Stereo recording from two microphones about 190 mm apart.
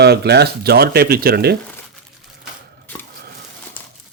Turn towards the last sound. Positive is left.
turn(degrees=10)  # may be behind; listen again after turning